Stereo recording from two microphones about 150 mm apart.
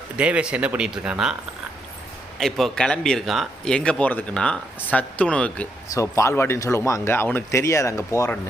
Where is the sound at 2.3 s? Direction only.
Centre (ahead or behind).